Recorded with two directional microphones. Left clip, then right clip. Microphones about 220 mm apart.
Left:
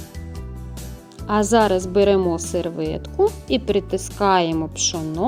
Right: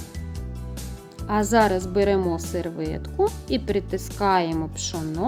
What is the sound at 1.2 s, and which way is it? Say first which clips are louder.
Speech: left 3 dB; 20° left (ahead or behind).